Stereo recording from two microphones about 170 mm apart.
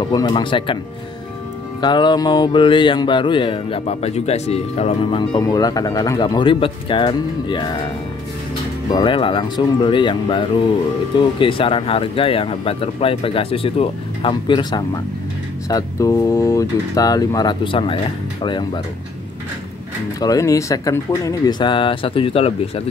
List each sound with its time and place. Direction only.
0.1 s music: 25° left (ahead or behind)
1.8 s music: 25° left (ahead or behind)
11.1 s speech: 30° left (ahead or behind)
15.7 s music: 20° left (ahead or behind)
20.2 s music: 20° left (ahead or behind)